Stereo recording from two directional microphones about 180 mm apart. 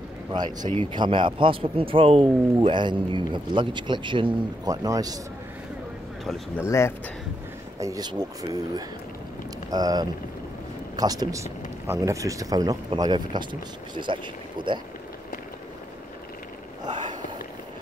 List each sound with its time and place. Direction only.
0.3 s speech: 25° right (ahead or behind)
6.6 s speech: 15° left (ahead or behind)
7.8 s speech: 20° right (ahead or behind)
16.8 s a sound: 25° right (ahead or behind)